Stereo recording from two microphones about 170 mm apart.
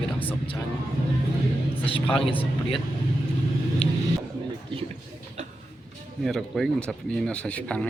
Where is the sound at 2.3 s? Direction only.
30° left (ahead or behind).